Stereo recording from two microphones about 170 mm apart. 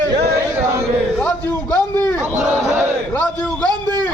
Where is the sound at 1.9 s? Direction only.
10° left (ahead or behind).